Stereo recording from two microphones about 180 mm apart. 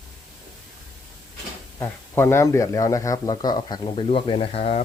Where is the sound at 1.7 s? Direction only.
15° left (ahead or behind); by 4.8 s 35° left (ahead or behind).